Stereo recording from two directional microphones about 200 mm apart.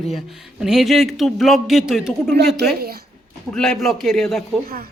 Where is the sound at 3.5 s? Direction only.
5° left (ahead or behind).